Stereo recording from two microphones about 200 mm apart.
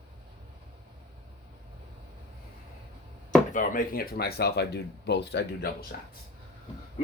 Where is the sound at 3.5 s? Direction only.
45° left (ahead or behind).